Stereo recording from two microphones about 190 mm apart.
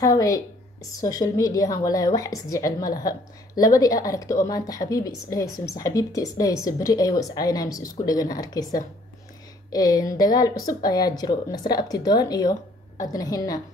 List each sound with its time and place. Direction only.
0.0 s a woman's voice: 15° left (ahead or behind)
9.7 s a woman's voice: 20° left (ahead or behind)